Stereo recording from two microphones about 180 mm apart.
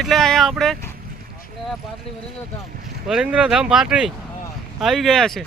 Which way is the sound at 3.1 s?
5° right (ahead or behind).